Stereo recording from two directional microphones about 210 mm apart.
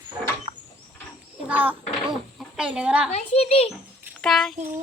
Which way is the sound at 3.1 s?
30° left (ahead or behind).